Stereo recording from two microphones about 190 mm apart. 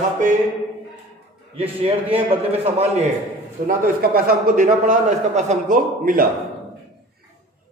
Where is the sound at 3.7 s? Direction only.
50° right (ahead or behind).